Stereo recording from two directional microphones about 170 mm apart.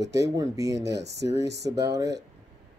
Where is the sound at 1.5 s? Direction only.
80° right.